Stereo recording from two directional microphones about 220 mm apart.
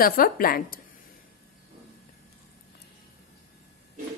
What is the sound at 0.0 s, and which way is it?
Speech, 40° left (ahead or behind).